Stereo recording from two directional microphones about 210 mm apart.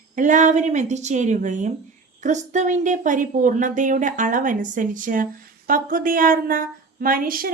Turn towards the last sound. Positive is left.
turn(degrees=-45)  # may be behind; listen again after turning